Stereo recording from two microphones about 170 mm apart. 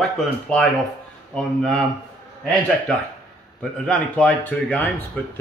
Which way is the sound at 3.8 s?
5° left (ahead or behind).